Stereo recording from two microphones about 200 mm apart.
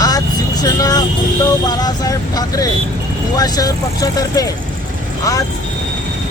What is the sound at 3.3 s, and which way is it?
Speech, 20° left (ahead or behind).